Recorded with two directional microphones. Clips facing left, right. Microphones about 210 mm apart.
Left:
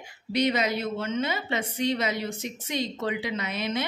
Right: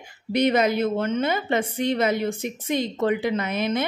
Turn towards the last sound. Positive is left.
turn(degrees=-50)  # may be behind; listen again after turning